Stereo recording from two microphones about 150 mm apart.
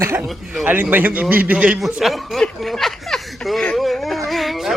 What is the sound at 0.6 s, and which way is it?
Speech, 10° right (ahead or behind).